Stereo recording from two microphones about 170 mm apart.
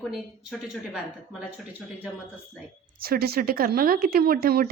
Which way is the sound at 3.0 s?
65° right (ahead or behind).